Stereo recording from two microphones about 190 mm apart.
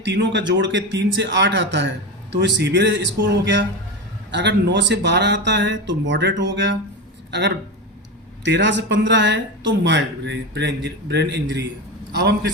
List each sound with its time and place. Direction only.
0.0 s a man's voice: 70° right (ahead or behind)